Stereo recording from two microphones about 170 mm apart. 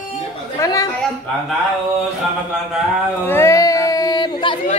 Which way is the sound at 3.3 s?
15° left (ahead or behind).